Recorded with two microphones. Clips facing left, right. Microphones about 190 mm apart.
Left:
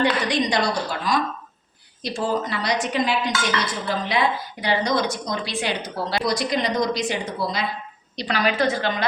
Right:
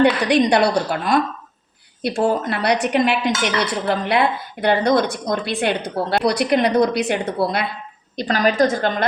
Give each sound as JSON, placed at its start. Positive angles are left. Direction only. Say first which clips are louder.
{"t": 0.0, "sound": "speech", "louder": "right 6 dB", "side_deg": -65}
{"t": 8.1, "sound": "a woman's voice", "louder": "right 4 dB", "side_deg": -45}